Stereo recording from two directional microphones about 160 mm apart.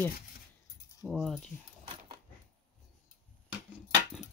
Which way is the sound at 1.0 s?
Centre (ahead or behind).